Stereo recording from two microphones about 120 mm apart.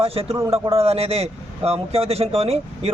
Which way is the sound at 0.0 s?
55° right (ahead or behind).